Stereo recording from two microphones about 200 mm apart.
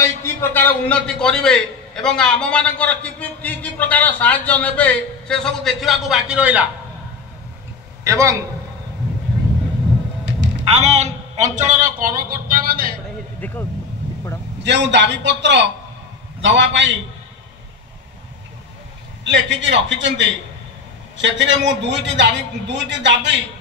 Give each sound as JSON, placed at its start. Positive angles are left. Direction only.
{"t": 0.0, "sound": "a man's voice", "side_deg": 15}
{"t": 8.0, "sound": "a man's voice", "side_deg": -15}
{"t": 10.2, "sound": "a sound", "side_deg": -60}
{"t": 10.7, "sound": "a man's voice", "side_deg": -35}
{"t": 13.4, "sound": "speech", "side_deg": 10}
{"t": 14.6, "sound": "a man's voice", "side_deg": -60}
{"t": 19.2, "sound": "a man's voice", "side_deg": -65}